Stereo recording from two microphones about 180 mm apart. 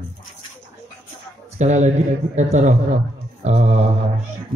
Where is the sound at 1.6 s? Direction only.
40° right (ahead or behind).